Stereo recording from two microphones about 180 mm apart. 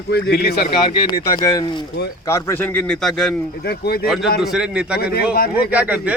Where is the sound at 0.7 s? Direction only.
25° left (ahead or behind); by 3.3 s 5° left (ahead or behind).